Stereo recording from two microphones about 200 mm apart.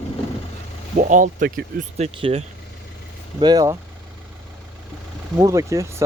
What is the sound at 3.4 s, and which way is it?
Speech, 20° right (ahead or behind).